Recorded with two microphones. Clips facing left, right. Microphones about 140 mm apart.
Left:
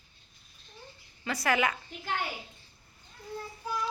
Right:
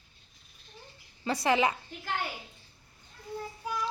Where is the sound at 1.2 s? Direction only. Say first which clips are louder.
Right 2 dB; 30° right (ahead or behind).